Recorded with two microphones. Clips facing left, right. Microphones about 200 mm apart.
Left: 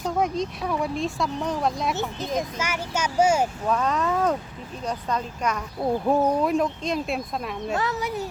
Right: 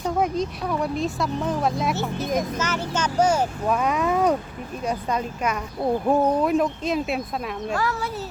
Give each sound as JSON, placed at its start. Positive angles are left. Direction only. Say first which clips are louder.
{"t": 0.0, "sound": "speech", "louder": "right 1 dB", "side_deg": 0}
{"t": 2.6, "sound": "speech", "louder": "right 2 dB", "side_deg": 10}
{"t": 3.7, "sound": "speech", "louder": "right 3 dB", "side_deg": -10}
{"t": 7.8, "sound": "speech", "louder": "even", "side_deg": 20}